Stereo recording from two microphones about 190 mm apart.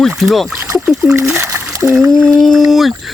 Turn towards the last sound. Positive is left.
turn(degrees=0)  # may be behind; listen again after turning